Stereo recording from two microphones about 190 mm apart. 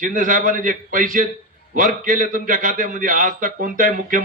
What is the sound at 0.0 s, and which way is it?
A man's voice, 45° right (ahead or behind).